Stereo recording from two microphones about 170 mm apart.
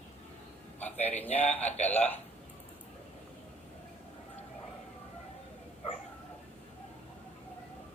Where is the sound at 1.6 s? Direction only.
40° left (ahead or behind).